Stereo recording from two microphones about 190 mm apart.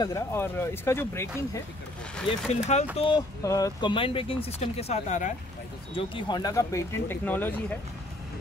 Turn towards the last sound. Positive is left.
turn(degrees=10)  # may be behind; listen again after turning